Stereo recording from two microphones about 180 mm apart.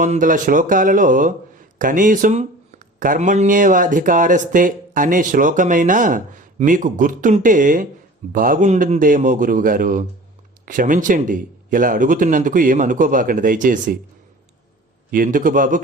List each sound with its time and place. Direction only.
0.0 s speech: 45° right (ahead or behind)
15.1 s speech: 50° right (ahead or behind)